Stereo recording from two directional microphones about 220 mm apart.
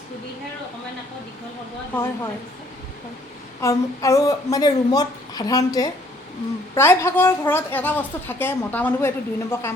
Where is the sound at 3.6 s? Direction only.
15° left (ahead or behind).